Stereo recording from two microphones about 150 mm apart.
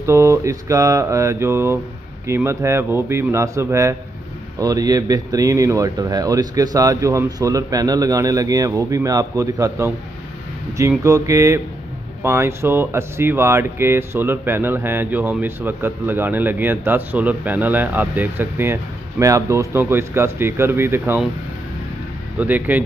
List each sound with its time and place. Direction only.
0.0 s speech: 20° right (ahead or behind)
11.1 s speech: 20° right (ahead or behind)
22.4 s speech: 10° right (ahead or behind)